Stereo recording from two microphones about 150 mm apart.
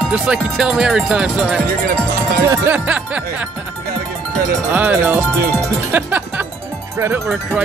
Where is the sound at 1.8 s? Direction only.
75° right (ahead or behind).